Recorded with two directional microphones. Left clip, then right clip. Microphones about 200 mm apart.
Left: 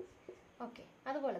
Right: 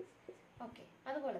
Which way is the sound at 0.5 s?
40° left (ahead or behind).